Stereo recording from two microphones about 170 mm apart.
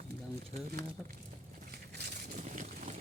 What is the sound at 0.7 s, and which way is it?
Speech, 65° right (ahead or behind).